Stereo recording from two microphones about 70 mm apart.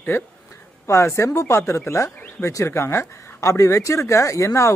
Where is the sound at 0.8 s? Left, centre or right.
Left.